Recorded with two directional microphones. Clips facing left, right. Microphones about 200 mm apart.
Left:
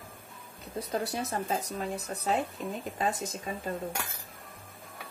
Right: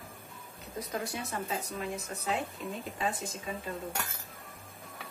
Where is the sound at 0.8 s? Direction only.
35° left (ahead or behind).